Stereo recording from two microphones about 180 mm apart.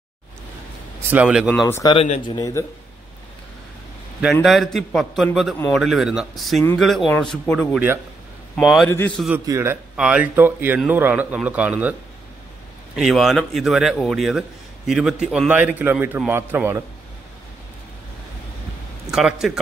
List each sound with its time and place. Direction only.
1.1 s a man's voice: 5° right (ahead or behind)
1.5 s a man's voice: 10° left (ahead or behind)
1.8 s speech: 25° left (ahead or behind)
2.0 s speech: 35° left (ahead or behind)
2.3 s a man's voice: 20° left (ahead or behind)
4.2 s a man's voice: centre (ahead or behind)
7.7 s a man's voice: 10° right (ahead or behind)
8.5 s a man's voice: centre (ahead or behind)
8.9 s a man's voice: 10° left (ahead or behind)
9.5 s a man's voice: 15° right (ahead or behind)
12.9 s a man's voice: centre (ahead or behind)
19.0 s a sound: centre (ahead or behind)